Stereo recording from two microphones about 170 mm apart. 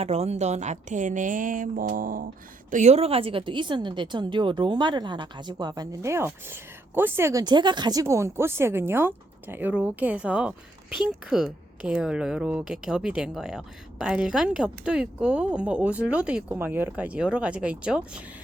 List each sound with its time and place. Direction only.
0.0 s a woman's voice: 40° right (ahead or behind); by 18.2 s 5° right (ahead or behind)